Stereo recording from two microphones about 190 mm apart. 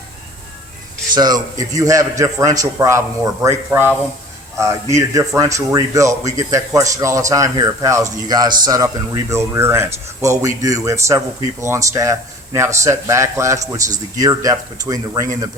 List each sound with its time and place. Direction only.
1.1 s speech: 20° right (ahead or behind)
4.9 s speech: 15° right (ahead or behind)